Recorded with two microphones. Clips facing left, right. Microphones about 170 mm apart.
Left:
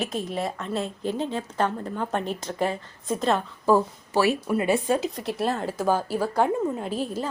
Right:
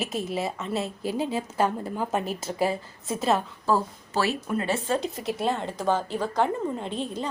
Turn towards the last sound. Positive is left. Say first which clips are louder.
# left 2 dB
turn(degrees=5)  # may be behind; listen again after turning